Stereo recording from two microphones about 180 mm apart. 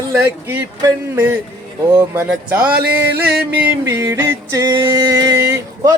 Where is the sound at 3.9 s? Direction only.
15° right (ahead or behind).